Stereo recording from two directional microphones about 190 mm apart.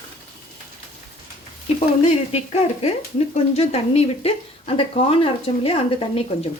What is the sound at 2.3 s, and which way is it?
Speech, 35° left (ahead or behind).